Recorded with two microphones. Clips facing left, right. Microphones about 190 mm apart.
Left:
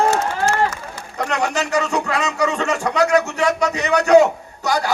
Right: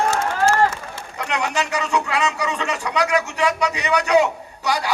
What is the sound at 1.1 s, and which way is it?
A man's voice, 45° left (ahead or behind).